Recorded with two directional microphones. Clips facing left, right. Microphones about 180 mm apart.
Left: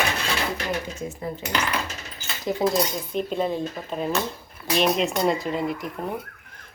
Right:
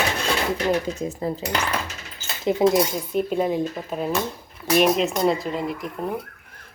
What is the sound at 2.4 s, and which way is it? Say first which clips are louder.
Speech: right 4 dB; 20° right (ahead or behind).